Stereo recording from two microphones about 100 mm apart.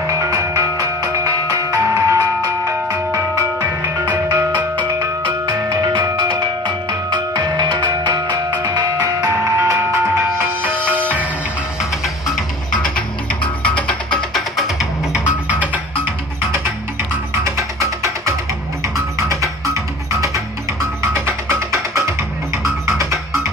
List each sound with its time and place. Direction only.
0.0 s music: 35° right (ahead or behind)
6.3 s music: 45° right (ahead or behind)
9.0 s music: 30° right (ahead or behind)
12.8 s music: 10° left (ahead or behind)
15.1 s music: 15° right (ahead or behind)
17.3 s music: 30° right (ahead or behind)